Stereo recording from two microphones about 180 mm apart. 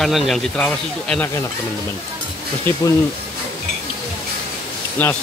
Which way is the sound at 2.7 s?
10° left (ahead or behind).